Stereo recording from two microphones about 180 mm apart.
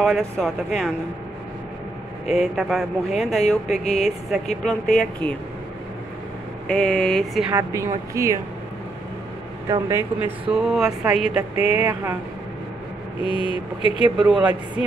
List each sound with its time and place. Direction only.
0.0 s speech: centre (ahead or behind)
2.2 s speech: centre (ahead or behind)
3.7 s speech: 40° left (ahead or behind)
4.6 s speech: 5° left (ahead or behind)
6.7 s speech: 5° left (ahead or behind)
7.5 s a woman's voice: 15° right (ahead or behind)
9.7 s a woman's voice: 15° right (ahead or behind)
10.5 s speech: 5° right (ahead or behind)
11.5 s speech: 35° left (ahead or behind)
11.8 s a woman's voice: 10° right (ahead or behind)
13.2 s speech: 30° left (ahead or behind)
14.2 s a woman's voice: 10° right (ahead or behind)